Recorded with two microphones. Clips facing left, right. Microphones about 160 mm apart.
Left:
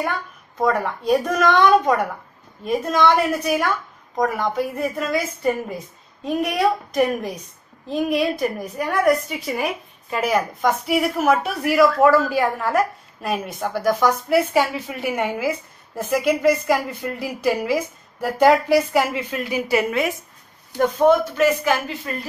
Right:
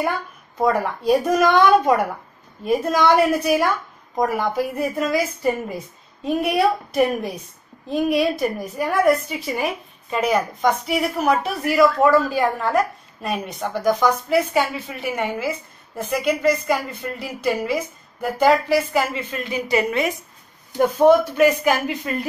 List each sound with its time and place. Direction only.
0.6 s a woman's voice: 10° right (ahead or behind)
20.7 s speech: 10° right (ahead or behind)